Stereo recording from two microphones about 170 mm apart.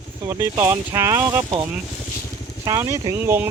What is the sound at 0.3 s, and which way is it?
Speech, 15° right (ahead or behind).